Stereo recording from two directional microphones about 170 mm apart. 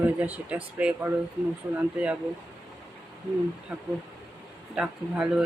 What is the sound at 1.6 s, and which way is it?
Speech, 20° right (ahead or behind).